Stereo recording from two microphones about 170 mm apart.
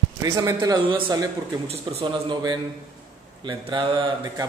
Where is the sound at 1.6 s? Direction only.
35° right (ahead or behind).